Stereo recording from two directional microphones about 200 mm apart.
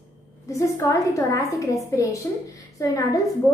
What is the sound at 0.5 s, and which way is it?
A woman's voice, 15° left (ahead or behind).